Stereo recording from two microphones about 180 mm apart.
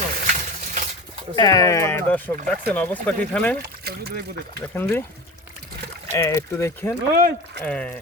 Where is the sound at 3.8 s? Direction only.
60° right (ahead or behind).